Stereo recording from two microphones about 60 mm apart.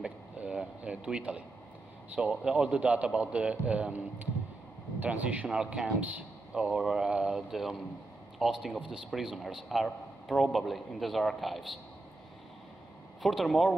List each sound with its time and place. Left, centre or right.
0.0 s a sound: centre
2.1 s a man's voice: centre
5.5 s a man's voice: centre
5.9 s a man's voice: right
6.5 s a man's voice: centre
8.7 s a man's voice: centre
9.1 s a man's voice: centre
13.2 s a man's voice: centre